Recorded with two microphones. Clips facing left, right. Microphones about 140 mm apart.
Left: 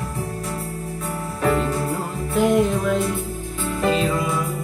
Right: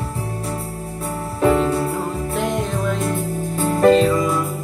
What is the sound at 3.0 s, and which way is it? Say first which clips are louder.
Music: right 3 dB; 45° right (ahead or behind).